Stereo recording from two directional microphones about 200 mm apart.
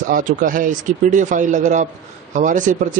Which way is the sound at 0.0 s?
40° right (ahead or behind).